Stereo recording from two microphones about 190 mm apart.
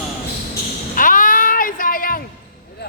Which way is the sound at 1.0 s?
45° left (ahead or behind).